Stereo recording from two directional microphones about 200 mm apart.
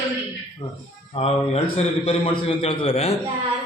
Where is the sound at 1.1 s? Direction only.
30° left (ahead or behind).